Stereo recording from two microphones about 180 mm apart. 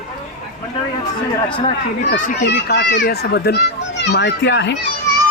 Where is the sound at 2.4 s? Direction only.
70° left (ahead or behind).